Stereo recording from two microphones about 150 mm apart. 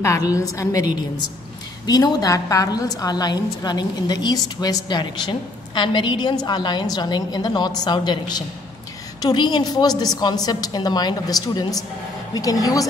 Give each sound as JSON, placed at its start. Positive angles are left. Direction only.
{"t": 0.0, "sound": "a woman's voice", "side_deg": 20}